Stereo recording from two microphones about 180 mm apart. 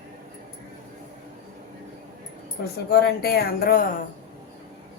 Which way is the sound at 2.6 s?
60° left (ahead or behind).